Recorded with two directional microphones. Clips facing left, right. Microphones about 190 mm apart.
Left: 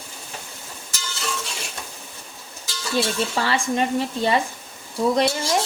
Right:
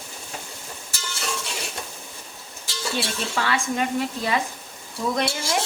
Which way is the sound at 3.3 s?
30° left (ahead or behind).